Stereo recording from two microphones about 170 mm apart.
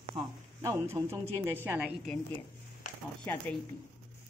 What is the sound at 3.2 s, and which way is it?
Speech, 5° left (ahead or behind).